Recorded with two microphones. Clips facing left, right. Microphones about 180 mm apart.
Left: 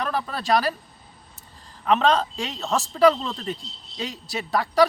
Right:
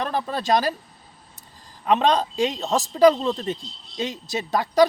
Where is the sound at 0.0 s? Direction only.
25° right (ahead or behind).